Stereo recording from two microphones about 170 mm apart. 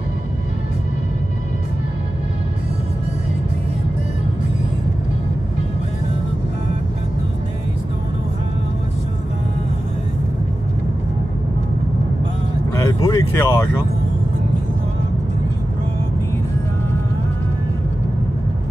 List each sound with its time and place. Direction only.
12.7 s vehicle: 20° left (ahead or behind)